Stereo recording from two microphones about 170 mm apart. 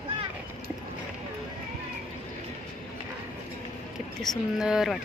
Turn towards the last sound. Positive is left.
turn(degrees=-5)  # may be behind; listen again after turning